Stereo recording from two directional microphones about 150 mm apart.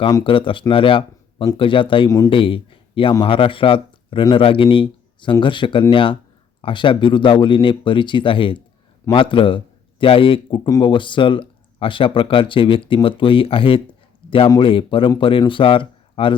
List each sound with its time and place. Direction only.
0.3 s speech: 35° left (ahead or behind)
2.3 s a man's voice: 35° left (ahead or behind)